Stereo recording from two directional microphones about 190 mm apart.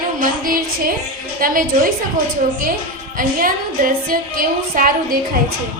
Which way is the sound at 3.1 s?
45° right (ahead or behind).